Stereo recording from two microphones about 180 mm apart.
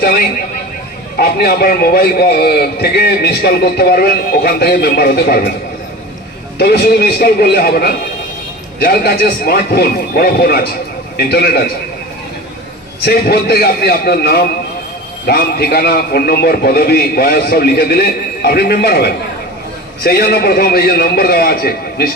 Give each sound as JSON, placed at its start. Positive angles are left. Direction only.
{"t": 0.0, "sound": "a man's voice", "side_deg": 55}
{"t": 6.6, "sound": "a man's voice", "side_deg": 60}
{"t": 13.1, "sound": "a man's voice", "side_deg": 60}